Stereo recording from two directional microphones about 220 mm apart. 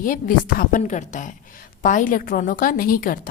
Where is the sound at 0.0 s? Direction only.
40° left (ahead or behind).